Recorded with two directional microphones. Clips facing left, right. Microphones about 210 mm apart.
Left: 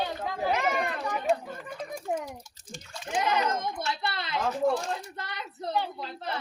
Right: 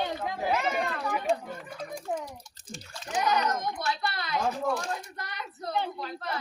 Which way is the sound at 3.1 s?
25° left (ahead or behind).